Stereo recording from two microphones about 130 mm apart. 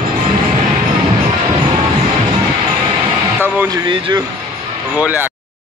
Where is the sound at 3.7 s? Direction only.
35° right (ahead or behind).